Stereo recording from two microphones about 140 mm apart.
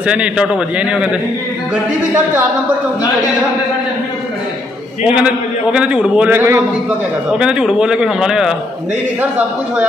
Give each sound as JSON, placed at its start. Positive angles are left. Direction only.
{"t": 0.0, "sound": "a man's voice", "side_deg": -10}
{"t": 5.0, "sound": "a man's voice", "side_deg": -10}